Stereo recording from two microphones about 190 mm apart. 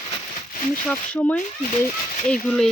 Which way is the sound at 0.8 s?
5° left (ahead or behind).